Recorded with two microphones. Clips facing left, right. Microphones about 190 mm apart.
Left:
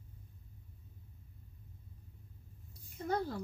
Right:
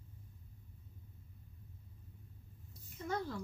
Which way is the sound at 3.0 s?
35° left (ahead or behind).